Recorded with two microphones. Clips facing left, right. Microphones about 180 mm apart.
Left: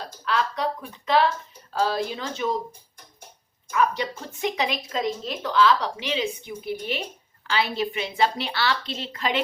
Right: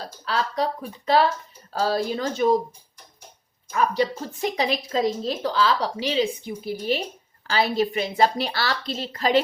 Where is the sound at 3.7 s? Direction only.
35° right (ahead or behind).